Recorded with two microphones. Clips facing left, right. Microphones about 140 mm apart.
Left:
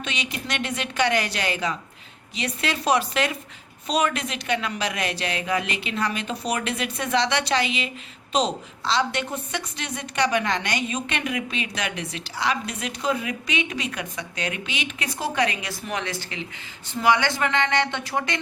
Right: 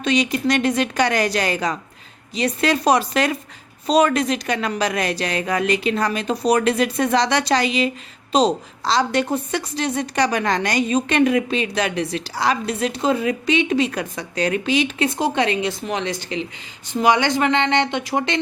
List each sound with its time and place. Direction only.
0.0 s a woman's voice: 40° right (ahead or behind); by 18.3 s 25° right (ahead or behind)